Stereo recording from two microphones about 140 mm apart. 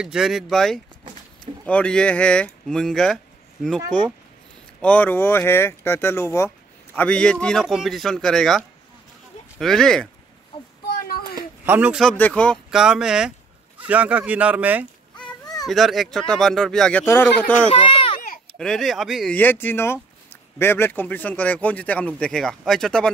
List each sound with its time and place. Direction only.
0.0 s a man's voice: 5° right (ahead or behind); by 7.0 s 20° left (ahead or behind)
7.0 s a man's voice: 5° left (ahead or behind)
10.9 s a sound: 90° left
11.6 s speech: 10° right (ahead or behind)
12.0 s speech: 10° left (ahead or behind)
12.7 s a man's voice: 5° right (ahead or behind)
15.6 s a man's voice: centre (ahead or behind)
17.0 s speech: 15° left (ahead or behind)
17.6 s a sound: 45° left (ahead or behind)
18.6 s a man's voice: 5° left (ahead or behind)
19.3 s speech: 15° left (ahead or behind)